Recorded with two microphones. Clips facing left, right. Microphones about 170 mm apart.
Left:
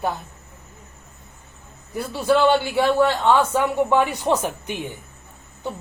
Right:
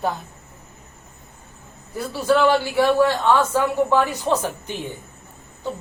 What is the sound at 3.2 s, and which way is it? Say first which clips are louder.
Speech: even; 15° left (ahead or behind).